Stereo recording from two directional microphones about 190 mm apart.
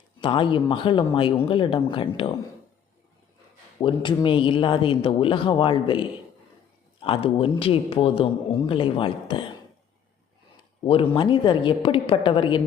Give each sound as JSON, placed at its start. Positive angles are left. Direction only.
{"t": 0.2, "sound": "speech", "side_deg": 25}
{"t": 3.8, "sound": "speech", "side_deg": 25}
{"t": 10.8, "sound": "speech", "side_deg": 30}